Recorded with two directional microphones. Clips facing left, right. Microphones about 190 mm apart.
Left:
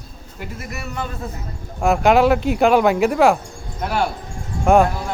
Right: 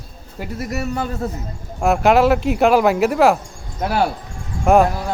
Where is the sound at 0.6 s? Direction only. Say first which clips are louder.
Right 7 dB; 40° right (ahead or behind).